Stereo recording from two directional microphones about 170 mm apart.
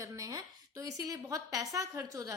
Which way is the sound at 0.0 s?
20° right (ahead or behind).